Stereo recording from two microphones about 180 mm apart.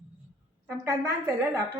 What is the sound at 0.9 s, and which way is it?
Speech, 20° right (ahead or behind).